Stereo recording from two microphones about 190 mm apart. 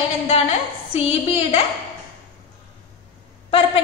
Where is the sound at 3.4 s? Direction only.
30° left (ahead or behind).